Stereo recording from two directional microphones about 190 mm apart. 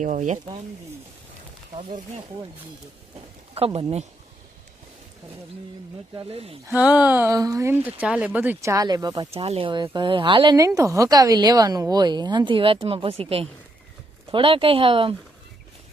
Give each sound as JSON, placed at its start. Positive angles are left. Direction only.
{"t": 0.0, "sound": "speech", "side_deg": -40}
{"t": 1.7, "sound": "a woman's voice", "side_deg": -30}
{"t": 3.5, "sound": "speech", "side_deg": -30}
{"t": 6.1, "sound": "speech", "side_deg": -30}
{"t": 6.7, "sound": "speech", "side_deg": -5}
{"t": 9.3, "sound": "a woman's voice", "side_deg": -30}